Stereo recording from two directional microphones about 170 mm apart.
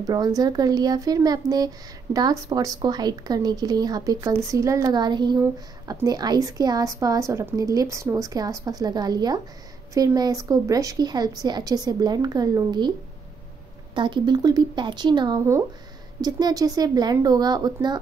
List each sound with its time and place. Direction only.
0.0 s speech: 20° right (ahead or behind)
13.9 s speech: 30° right (ahead or behind)